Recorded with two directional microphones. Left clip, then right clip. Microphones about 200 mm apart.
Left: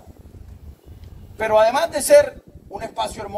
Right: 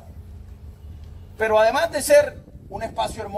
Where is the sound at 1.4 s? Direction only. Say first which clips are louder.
Left 2 dB; 45° left (ahead or behind).